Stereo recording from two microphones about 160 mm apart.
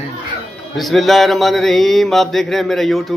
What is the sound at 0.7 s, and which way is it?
Mantra, centre (ahead or behind).